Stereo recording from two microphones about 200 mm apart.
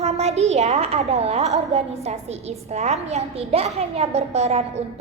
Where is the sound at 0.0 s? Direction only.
30° right (ahead or behind).